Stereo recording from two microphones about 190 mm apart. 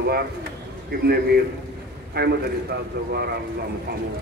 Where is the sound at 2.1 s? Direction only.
55° right (ahead or behind).